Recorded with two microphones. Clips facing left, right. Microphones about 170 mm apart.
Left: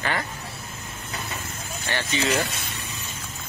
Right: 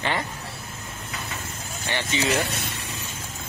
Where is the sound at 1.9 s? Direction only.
15° right (ahead or behind).